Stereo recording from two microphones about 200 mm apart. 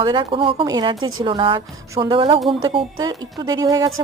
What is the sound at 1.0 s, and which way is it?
Speech, 90° right.